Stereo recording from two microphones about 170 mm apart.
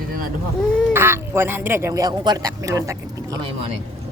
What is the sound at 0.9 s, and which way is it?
Speech, 15° right (ahead or behind).